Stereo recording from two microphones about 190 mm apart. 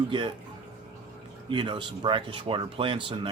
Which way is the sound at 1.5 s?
25° right (ahead or behind).